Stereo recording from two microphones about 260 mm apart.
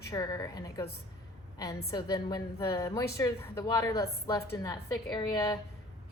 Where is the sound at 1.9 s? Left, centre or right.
Centre.